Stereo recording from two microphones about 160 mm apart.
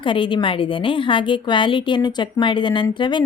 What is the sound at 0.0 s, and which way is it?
A woman's voice, 30° left (ahead or behind).